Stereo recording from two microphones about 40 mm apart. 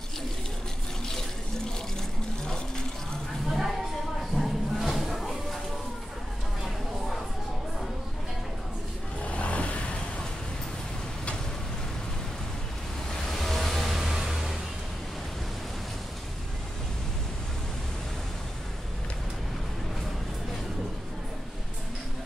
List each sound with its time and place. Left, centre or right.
2.0 s a sound: centre
3.4 s music: centre
9.2 s vehicle: left
13.1 s vehicle: centre